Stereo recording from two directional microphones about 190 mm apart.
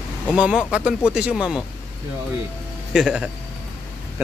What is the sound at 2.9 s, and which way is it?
Speech, 5° right (ahead or behind).